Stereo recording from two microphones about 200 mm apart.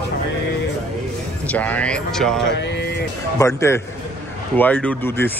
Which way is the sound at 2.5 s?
60° left (ahead or behind).